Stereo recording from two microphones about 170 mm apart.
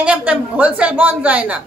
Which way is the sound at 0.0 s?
10° right (ahead or behind).